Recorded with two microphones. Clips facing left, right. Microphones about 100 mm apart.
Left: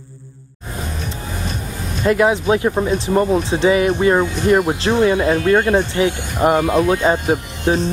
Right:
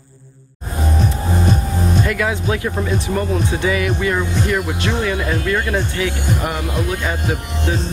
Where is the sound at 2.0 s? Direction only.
20° left (ahead or behind).